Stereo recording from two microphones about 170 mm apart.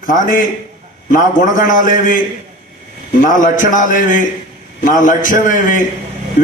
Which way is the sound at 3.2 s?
50° left (ahead or behind).